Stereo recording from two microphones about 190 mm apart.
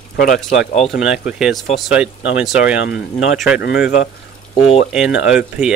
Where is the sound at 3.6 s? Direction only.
55° left (ahead or behind).